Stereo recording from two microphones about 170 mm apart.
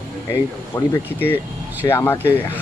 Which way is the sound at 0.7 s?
15° left (ahead or behind).